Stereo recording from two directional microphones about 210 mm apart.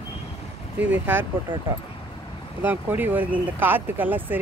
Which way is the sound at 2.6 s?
10° right (ahead or behind).